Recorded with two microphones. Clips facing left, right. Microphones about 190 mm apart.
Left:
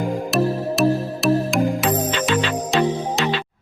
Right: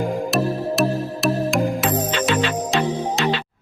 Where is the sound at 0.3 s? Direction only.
Centre (ahead or behind).